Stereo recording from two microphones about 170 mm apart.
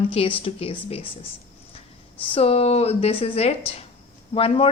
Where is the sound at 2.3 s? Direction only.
35° left (ahead or behind).